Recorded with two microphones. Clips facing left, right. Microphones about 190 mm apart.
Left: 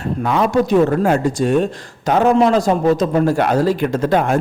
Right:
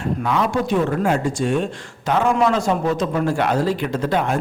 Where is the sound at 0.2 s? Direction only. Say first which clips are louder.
Left 7 dB; 45° left (ahead or behind).